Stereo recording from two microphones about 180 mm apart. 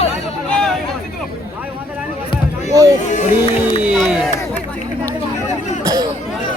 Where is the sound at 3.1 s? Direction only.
40° left (ahead or behind).